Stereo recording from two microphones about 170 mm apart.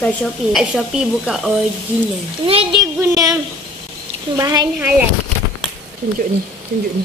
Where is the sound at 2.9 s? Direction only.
20° right (ahead or behind).